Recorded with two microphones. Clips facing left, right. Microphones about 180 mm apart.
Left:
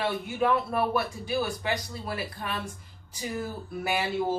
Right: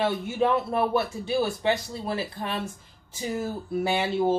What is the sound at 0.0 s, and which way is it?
Speech, 25° right (ahead or behind).